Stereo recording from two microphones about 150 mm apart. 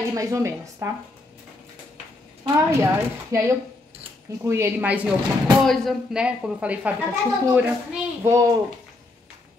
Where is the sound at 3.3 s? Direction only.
20° right (ahead or behind).